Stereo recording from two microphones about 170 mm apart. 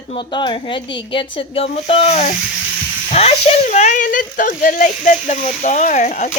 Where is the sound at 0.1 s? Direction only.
30° left (ahead or behind).